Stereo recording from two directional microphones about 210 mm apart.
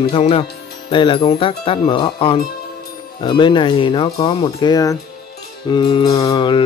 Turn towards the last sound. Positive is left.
turn(degrees=25)  # may be behind; listen again after turning